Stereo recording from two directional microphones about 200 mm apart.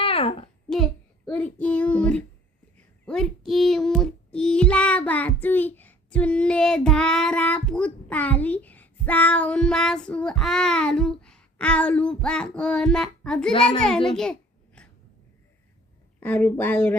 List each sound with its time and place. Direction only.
0.0 s a sound: 30° left (ahead or behind)
1.3 s child singing: 5° left (ahead or behind)
3.1 s speech: centre (ahead or behind)
14.8 s wheeze: 5° left (ahead or behind)
16.2 s child singing: 10° left (ahead or behind)